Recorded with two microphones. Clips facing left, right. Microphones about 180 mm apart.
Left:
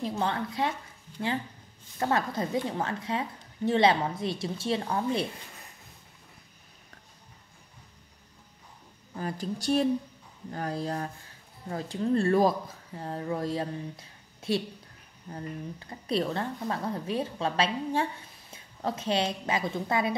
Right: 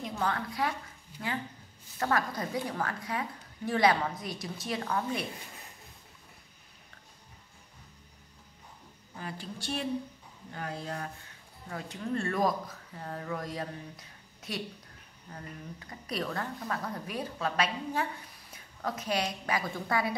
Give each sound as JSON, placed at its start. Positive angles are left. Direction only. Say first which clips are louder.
{"t": 0.1, "sound": "a woman's voice", "louder": "left 3 dB", "side_deg": 25}
{"t": 2.0, "sound": "a woman's voice", "louder": "left 3 dB", "side_deg": 25}
{"t": 9.2, "sound": "a woman's voice", "louder": "left 8 dB", "side_deg": 40}